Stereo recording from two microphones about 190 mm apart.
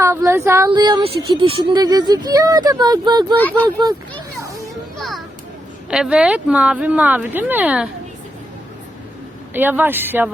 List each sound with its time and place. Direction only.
0.0 s speech: 15° right (ahead or behind)
3.3 s speech: 10° left (ahead or behind)
4.9 s children playing: centre (ahead or behind)
5.9 s speech: 5° right (ahead or behind)
9.5 s speech: 10° right (ahead or behind)